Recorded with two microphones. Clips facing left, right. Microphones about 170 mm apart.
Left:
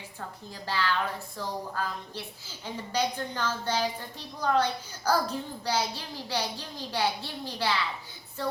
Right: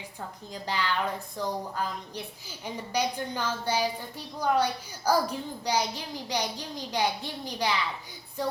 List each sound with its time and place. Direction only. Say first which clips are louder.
0.5 s a child's voice: even; 15° right (ahead or behind)
8.4 s music: right 1 dB; 15° right (ahead or behind)